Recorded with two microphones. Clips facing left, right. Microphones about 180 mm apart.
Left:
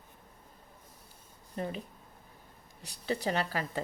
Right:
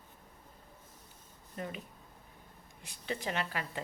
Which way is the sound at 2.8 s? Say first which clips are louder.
Left 5 dB; 35° left (ahead or behind).